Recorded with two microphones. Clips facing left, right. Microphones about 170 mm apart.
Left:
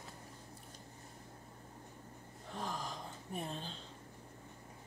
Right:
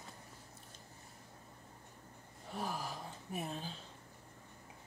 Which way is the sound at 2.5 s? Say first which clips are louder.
Right 1 dB; 10° right (ahead or behind).